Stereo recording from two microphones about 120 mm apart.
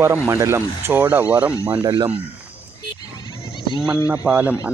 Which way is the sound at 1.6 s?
40° right (ahead or behind).